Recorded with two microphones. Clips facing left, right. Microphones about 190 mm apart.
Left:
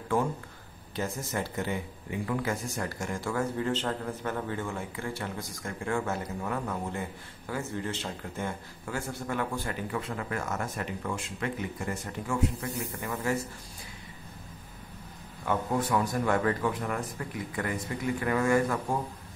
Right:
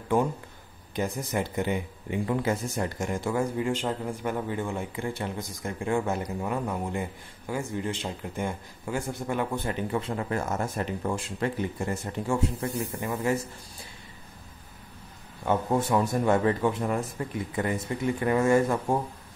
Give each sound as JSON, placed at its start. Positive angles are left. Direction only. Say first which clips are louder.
{"t": 0.9, "sound": "speech", "louder": "right 4 dB", "side_deg": -15}
{"t": 13.0, "sound": "speech", "louder": "right 3 dB", "side_deg": -20}
{"t": 15.4, "sound": "speech", "louder": "right 3 dB", "side_deg": -25}